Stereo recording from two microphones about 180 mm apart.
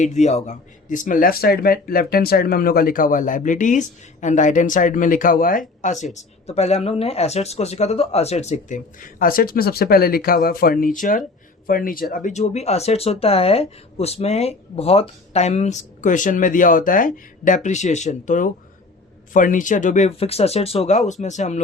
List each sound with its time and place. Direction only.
0.0 s speech: 40° left (ahead or behind)